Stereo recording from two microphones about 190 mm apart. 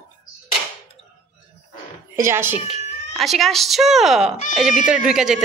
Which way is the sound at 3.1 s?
Centre (ahead or behind).